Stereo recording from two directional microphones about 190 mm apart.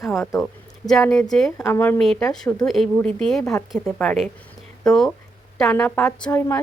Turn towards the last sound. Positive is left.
turn(degrees=15)  # may be behind; listen again after turning